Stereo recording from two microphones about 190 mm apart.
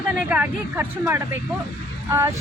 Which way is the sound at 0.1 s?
10° right (ahead or behind).